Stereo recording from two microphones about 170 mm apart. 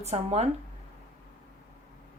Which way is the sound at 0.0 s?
40° right (ahead or behind).